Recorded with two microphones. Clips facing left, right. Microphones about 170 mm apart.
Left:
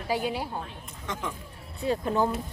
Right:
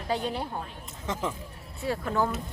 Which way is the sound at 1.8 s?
20° left (ahead or behind).